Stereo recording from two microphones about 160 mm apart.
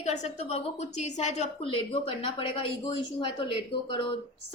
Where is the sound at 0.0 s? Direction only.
45° left (ahead or behind).